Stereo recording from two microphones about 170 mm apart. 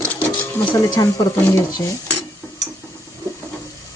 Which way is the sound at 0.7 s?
20° left (ahead or behind).